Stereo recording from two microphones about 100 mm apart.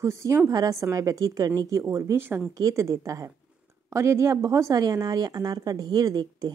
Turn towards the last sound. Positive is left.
turn(degrees=-40)  # may be behind; listen again after turning